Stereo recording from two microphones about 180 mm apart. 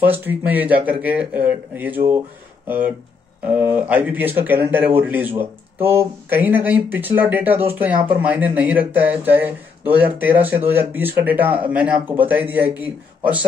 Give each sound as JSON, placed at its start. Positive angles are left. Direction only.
{"t": 0.0, "sound": "speech", "side_deg": -10}
{"t": 3.4, "sound": "speech", "side_deg": -10}